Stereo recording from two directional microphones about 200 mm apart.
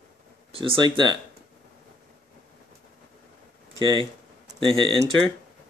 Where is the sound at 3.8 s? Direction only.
25° right (ahead or behind).